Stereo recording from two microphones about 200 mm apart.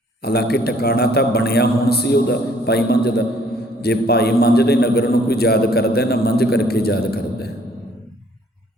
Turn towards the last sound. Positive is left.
turn(degrees=50)  # may be behind; listen again after turning